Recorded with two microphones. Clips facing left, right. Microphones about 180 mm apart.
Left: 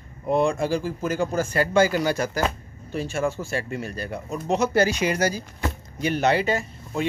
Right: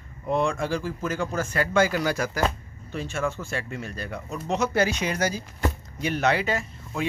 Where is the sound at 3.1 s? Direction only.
30° left (ahead or behind).